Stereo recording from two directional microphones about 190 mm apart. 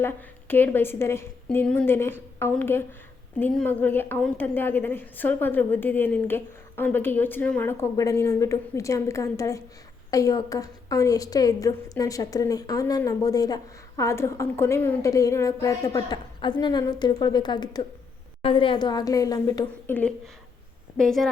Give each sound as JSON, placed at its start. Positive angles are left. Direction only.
{"t": 0.0, "sound": "a woman's voice", "side_deg": 10}
{"t": 19.9, "sound": "a woman's voice", "side_deg": 10}